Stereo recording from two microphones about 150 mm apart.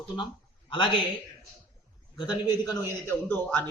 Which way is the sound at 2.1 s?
30° left (ahead or behind).